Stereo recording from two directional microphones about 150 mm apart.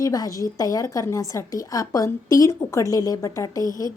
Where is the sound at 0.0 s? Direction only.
25° left (ahead or behind).